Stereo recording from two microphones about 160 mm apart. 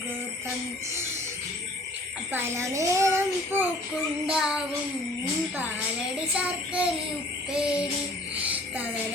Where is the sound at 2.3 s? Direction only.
15° right (ahead or behind).